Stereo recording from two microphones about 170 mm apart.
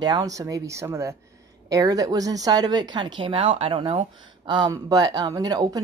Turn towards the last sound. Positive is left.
turn(degrees=-20)  # may be behind; listen again after turning